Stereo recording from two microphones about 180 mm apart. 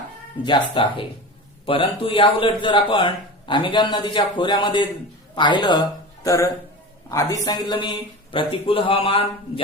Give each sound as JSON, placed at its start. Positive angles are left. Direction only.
{"t": 0.4, "sound": "a man's voice", "side_deg": 25}